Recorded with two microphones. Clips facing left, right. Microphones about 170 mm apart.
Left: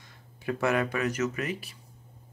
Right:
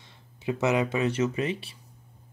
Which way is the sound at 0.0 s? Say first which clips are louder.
Right 3 dB; 25° right (ahead or behind).